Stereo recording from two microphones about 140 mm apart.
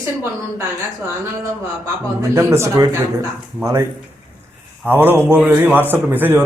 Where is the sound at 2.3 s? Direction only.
20° right (ahead or behind).